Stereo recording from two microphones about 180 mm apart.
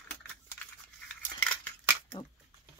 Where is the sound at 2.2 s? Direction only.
20° left (ahead or behind).